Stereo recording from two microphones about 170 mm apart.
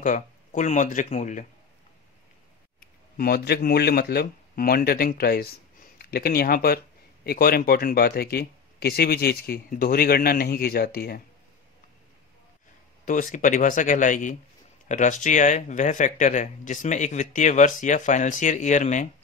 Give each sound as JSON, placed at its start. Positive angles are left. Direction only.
{"t": 0.0, "sound": "speech", "side_deg": 50}
{"t": 3.2, "sound": "speech", "side_deg": 65}
{"t": 13.0, "sound": "speech", "side_deg": 50}